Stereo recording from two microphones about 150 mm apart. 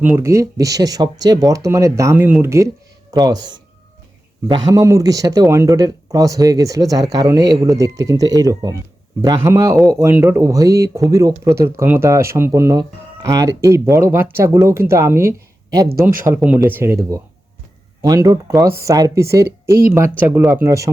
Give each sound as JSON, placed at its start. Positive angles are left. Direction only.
{"t": 0.0, "sound": "speech", "side_deg": -15}